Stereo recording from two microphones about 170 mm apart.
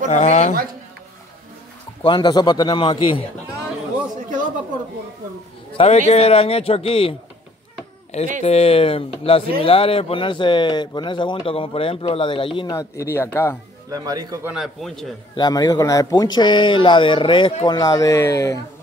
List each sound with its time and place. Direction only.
0.1 s a woman's voice: 40° left (ahead or behind)
2.0 s speech: 25° left (ahead or behind)
5.8 s speech: 40° left (ahead or behind)
8.4 s speech: 35° left (ahead or behind)
12.7 s speech: 15° left (ahead or behind)
13.8 s a man's voice: 20° right (ahead or behind)
14.5 s a man's voice: centre (ahead or behind)
15.3 s speech: 25° left (ahead or behind)
17.7 s speech: 20° left (ahead or behind)